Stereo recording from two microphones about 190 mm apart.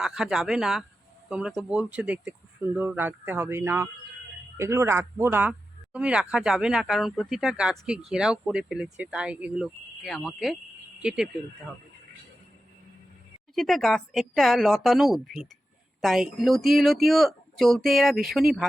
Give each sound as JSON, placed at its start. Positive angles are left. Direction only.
{"t": 0.0, "sound": "speech", "side_deg": 0}
{"t": 13.6, "sound": "speech", "side_deg": 0}